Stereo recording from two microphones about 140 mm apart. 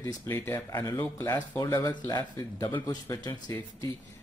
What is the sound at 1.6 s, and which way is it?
Speech, 25° left (ahead or behind).